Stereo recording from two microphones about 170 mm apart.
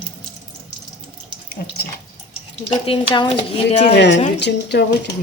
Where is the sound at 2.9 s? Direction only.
30° left (ahead or behind).